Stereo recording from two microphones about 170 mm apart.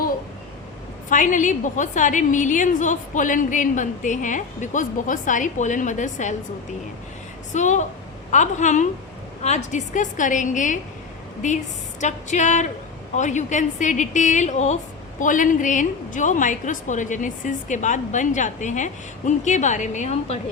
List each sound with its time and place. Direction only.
1.1 s a woman's voice: 50° left (ahead or behind)
7.5 s a woman's voice: 45° left (ahead or behind)